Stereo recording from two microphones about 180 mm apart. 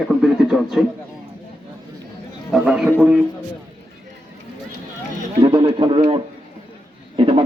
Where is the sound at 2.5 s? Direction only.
5° right (ahead or behind).